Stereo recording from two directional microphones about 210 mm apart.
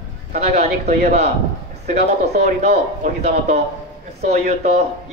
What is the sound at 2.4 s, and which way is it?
Speech, 35° right (ahead or behind).